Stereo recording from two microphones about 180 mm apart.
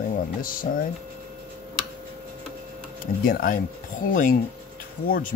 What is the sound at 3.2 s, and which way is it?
Speech, 50° left (ahead or behind).